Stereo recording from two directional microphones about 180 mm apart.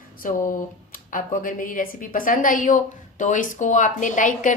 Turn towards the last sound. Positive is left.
turn(degrees=45)  # may be behind; listen again after turning